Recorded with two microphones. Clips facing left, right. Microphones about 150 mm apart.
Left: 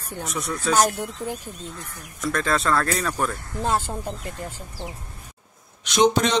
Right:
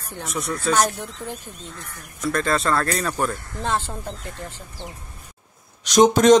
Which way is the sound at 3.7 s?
10° left (ahead or behind).